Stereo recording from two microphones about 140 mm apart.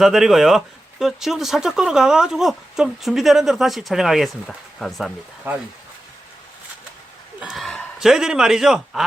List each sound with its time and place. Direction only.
0.0 s speech: 5° right (ahead or behind)
5.5 s speech: 15° right (ahead or behind)
7.3 s a sound: 5° right (ahead or behind)
7.9 s speech: 5° right (ahead or behind)